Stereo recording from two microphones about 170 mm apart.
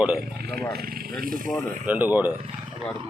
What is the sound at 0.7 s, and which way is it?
Speech, 55° right (ahead or behind).